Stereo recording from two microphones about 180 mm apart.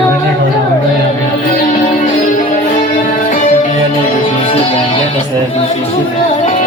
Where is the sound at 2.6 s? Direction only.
40° left (ahead or behind).